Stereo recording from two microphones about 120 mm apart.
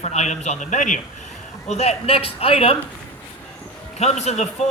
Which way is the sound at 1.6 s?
65° left (ahead or behind).